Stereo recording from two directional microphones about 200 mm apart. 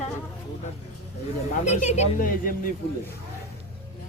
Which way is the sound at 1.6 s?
35° left (ahead or behind).